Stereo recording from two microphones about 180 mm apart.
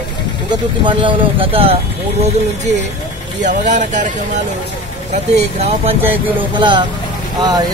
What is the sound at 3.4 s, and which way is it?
Speech, 45° right (ahead or behind).